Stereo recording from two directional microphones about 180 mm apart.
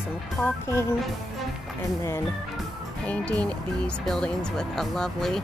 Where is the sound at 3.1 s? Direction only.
5° left (ahead or behind).